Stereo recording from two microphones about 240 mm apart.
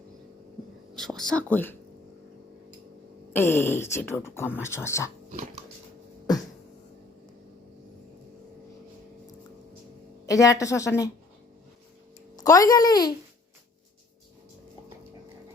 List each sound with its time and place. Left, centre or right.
0.9 s speech: centre
3.3 s speech: centre
10.2 s speech: centre
12.4 s speech: centre